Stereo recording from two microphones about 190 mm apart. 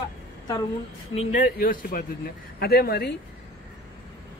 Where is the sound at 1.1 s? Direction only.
35° left (ahead or behind); by 3.1 s 55° left (ahead or behind).